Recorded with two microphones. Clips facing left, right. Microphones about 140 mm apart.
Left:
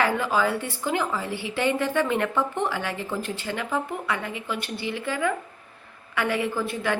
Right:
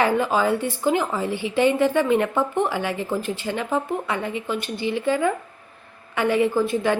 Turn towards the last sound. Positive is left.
turn(degrees=-25)  # may be behind; listen again after turning